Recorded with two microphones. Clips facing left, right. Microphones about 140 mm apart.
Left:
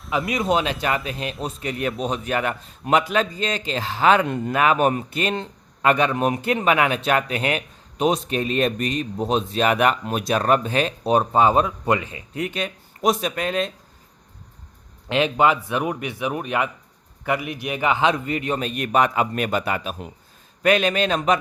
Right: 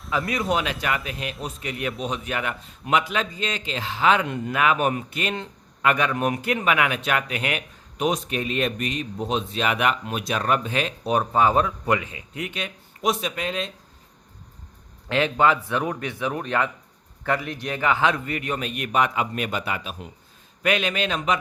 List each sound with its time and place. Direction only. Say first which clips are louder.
0.1 s a man's voice: left 3 dB; 20° left (ahead or behind)
11.9 s a man's voice: left 4 dB; 35° left (ahead or behind)
15.1 s a man's voice: left 2 dB; 20° left (ahead or behind); by 21.3 s 40° left (ahead or behind)